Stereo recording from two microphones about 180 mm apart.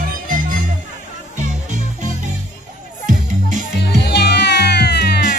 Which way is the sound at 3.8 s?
65° left (ahead or behind).